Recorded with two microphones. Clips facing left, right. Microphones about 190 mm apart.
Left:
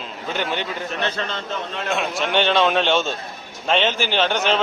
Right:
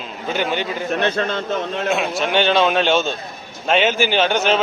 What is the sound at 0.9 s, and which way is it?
A man's voice, 55° right (ahead or behind).